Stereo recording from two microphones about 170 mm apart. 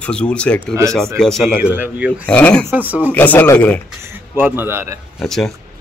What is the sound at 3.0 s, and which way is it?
Speech, 10° left (ahead or behind).